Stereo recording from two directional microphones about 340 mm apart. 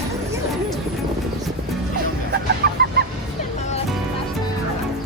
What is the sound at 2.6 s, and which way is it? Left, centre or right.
Fowl, right.